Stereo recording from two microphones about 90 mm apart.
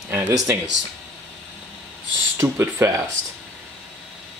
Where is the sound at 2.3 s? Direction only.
30° right (ahead or behind).